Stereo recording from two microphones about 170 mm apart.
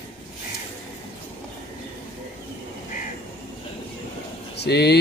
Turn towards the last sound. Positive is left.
turn(degrees=75)  # may be behind; listen again after turning